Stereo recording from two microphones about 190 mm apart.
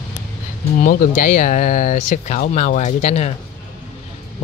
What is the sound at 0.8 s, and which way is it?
Speech, 45° left (ahead or behind).